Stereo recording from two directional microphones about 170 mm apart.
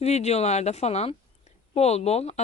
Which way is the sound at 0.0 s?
40° left (ahead or behind).